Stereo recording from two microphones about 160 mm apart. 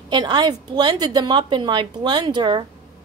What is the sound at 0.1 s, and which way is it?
A woman's voice, 25° right (ahead or behind).